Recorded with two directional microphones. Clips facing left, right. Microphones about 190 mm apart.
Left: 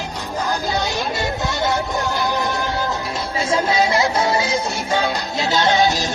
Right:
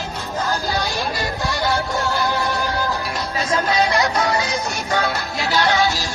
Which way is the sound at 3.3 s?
25° left (ahead or behind).